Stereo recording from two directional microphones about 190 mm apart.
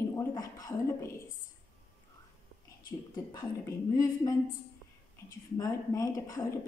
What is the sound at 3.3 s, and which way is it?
A woman's voice, 20° left (ahead or behind).